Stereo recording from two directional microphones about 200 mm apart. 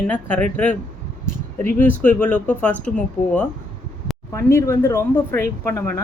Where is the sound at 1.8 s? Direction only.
10° left (ahead or behind).